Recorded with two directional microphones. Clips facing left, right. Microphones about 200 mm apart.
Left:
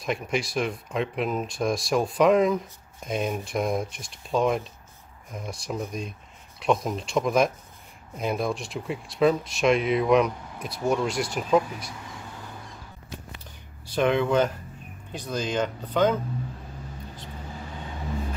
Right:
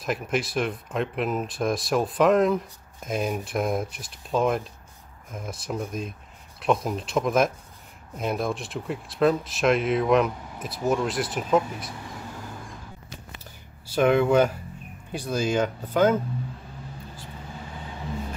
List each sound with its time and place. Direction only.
0.0 s speech: centre (ahead or behind)
13.8 s speech: 5° right (ahead or behind)